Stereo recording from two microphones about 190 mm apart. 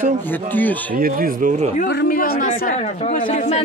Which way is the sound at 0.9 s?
50° right (ahead or behind).